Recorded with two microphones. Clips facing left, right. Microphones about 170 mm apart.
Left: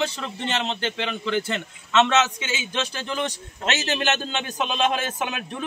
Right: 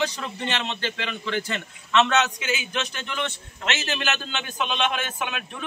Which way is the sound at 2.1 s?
25° left (ahead or behind).